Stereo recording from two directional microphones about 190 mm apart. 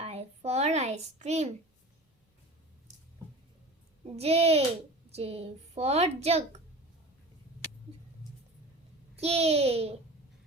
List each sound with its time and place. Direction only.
0.0 s a sound: 35° right (ahead or behind)
4.0 s a woman's voice: 30° right (ahead or behind)
9.1 s a woman's voice: 35° right (ahead or behind)